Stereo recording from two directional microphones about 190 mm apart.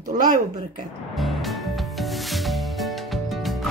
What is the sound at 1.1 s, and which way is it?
Music, centre (ahead or behind).